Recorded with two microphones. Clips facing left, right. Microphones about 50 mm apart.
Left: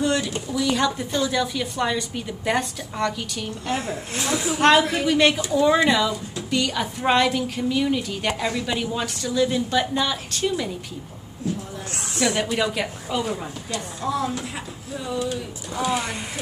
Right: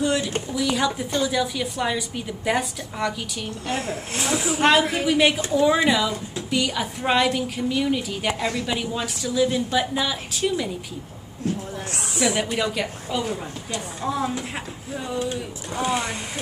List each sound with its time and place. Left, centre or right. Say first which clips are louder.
0.0 s a sound: even; centre
0.5 s a woman's voice: left 2 dB; centre
3.7 s speech: left 1 dB; centre
4.4 s a woman's voice: left 2 dB; centre
11.4 s speech: right 1 dB; right
12.1 s a woman's voice: even; centre
12.5 s a woman's voice: left 1 dB; centre
14.0 s speech: even; centre